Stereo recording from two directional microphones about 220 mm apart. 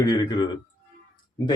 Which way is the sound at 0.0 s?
20° left (ahead or behind).